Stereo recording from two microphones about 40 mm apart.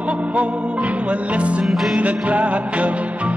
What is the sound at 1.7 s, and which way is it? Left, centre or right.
Music, centre.